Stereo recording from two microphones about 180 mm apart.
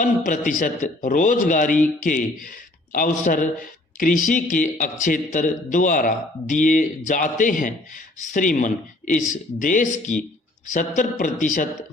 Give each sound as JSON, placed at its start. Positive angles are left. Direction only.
{"t": 0.0, "sound": "speech", "side_deg": 45}